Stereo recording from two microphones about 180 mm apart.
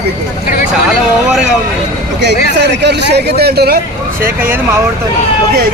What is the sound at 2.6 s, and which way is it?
Speech, 70° right (ahead or behind).